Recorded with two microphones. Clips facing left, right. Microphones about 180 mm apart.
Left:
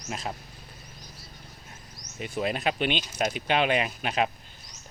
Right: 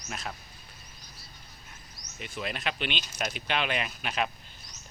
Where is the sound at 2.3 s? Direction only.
40° left (ahead or behind).